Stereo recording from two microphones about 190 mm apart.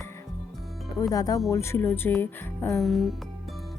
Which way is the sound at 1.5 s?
15° left (ahead or behind).